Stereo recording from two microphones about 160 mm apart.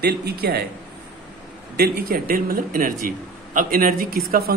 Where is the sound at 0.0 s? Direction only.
80° right.